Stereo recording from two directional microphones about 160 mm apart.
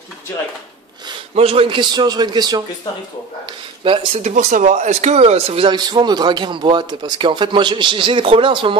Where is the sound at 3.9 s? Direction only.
40° right (ahead or behind).